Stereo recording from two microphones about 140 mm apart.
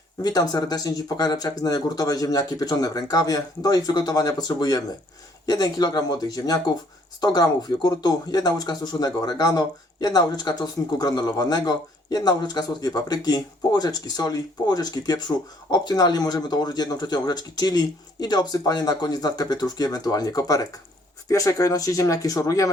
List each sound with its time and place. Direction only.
0.2 s speech: 30° left (ahead or behind)